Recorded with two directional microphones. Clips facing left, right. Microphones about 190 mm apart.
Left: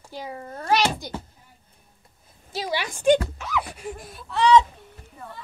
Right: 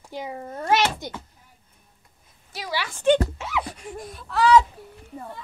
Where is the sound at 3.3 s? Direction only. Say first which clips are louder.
Even; 25° right (ahead or behind).